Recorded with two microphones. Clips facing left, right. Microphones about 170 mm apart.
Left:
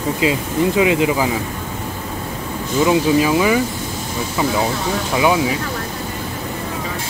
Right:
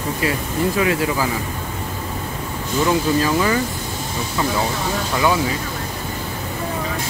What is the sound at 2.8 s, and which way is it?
Speech, 15° left (ahead or behind).